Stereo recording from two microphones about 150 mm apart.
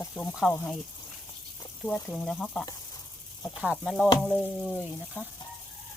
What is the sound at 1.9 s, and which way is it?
Speech, 5° left (ahead or behind).